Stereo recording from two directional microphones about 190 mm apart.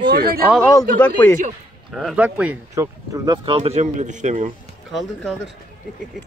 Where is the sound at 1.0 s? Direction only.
10° left (ahead or behind).